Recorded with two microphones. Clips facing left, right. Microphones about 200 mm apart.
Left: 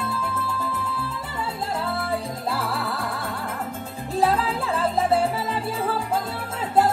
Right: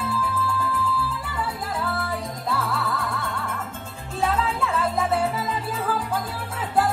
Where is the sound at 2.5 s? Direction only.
30° left (ahead or behind).